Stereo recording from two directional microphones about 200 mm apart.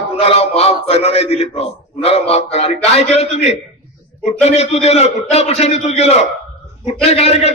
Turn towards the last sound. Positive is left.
turn(degrees=30)  # may be behind; listen again after turning